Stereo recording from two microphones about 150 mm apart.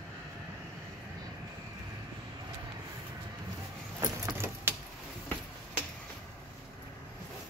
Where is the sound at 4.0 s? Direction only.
15° right (ahead or behind).